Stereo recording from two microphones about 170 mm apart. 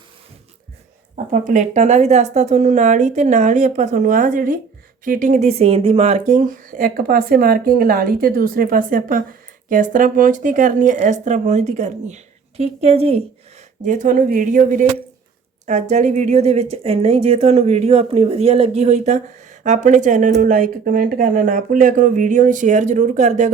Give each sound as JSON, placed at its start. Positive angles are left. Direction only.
{"t": 1.1, "sound": "speech", "side_deg": -45}
{"t": 13.8, "sound": "speech", "side_deg": -50}